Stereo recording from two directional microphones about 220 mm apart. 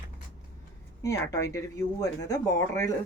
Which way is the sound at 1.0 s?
15° left (ahead or behind).